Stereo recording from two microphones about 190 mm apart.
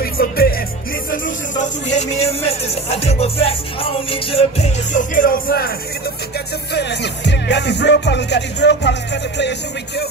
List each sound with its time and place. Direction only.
0.0 s music: 50° left (ahead or behind)
1.1 s speech: 45° left (ahead or behind)
4.1 s music: 30° left (ahead or behind); by 5.7 s 50° left (ahead or behind)
6.7 s music: 65° left (ahead or behind)